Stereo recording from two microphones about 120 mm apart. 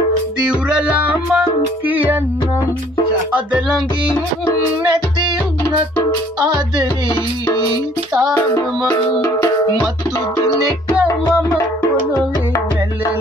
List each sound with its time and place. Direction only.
0.5 s music: 10° right (ahead or behind)
3.3 s music: 10° right (ahead or behind)
6.4 s music: 35° right (ahead or behind)
8.1 s music: 5° right (ahead or behind)